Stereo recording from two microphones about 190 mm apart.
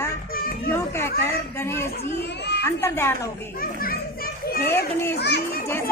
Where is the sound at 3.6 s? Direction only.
50° left (ahead or behind).